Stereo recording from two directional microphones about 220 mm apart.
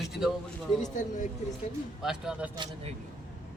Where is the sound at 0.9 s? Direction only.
35° left (ahead or behind).